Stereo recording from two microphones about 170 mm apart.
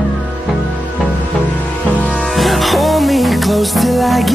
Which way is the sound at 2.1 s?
Centre (ahead or behind).